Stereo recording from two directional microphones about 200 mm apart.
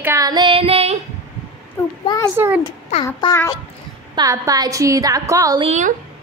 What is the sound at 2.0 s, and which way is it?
Speech, 20° left (ahead or behind).